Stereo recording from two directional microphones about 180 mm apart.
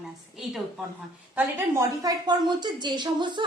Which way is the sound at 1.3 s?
10° right (ahead or behind).